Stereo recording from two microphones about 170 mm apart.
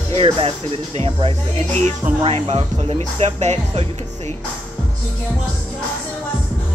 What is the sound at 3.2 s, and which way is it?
Speech, 40° right (ahead or behind).